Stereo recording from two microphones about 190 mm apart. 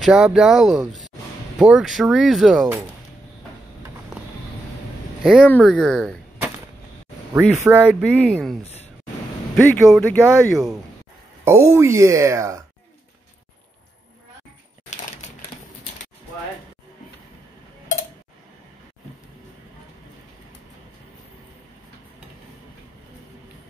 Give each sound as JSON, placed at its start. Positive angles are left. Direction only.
{"t": 0.0, "sound": "speech", "side_deg": -5}
{"t": 5.2, "sound": "speech", "side_deg": 0}
{"t": 7.3, "sound": "speech", "side_deg": -10}
{"t": 9.6, "sound": "speech", "side_deg": 5}
{"t": 11.4, "sound": "speech", "side_deg": -15}